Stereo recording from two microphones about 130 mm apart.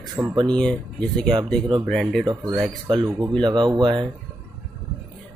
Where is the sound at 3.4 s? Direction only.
35° right (ahead or behind).